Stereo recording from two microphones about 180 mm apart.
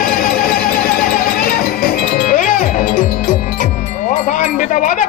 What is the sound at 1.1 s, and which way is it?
Music, 50° left (ahead or behind).